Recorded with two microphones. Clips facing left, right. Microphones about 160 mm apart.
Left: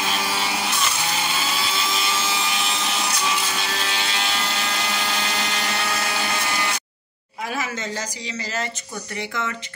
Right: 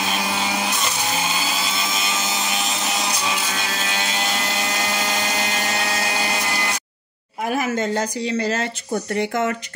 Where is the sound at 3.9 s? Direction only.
45° right (ahead or behind).